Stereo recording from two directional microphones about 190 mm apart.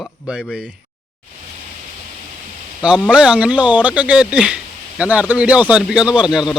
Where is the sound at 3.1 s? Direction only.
5° right (ahead or behind).